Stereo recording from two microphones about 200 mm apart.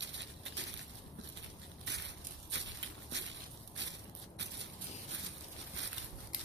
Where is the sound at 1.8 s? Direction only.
60° right (ahead or behind).